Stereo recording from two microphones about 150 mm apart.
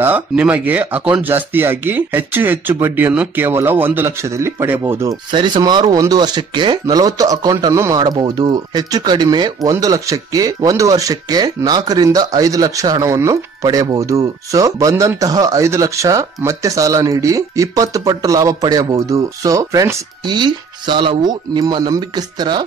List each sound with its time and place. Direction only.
0.0 s speech: 10° right (ahead or behind)
5.3 s speech: 30° right (ahead or behind)